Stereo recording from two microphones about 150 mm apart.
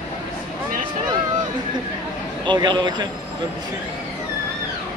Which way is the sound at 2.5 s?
30° right (ahead or behind).